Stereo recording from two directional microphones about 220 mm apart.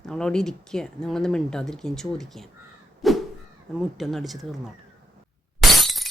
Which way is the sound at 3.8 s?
Centre (ahead or behind).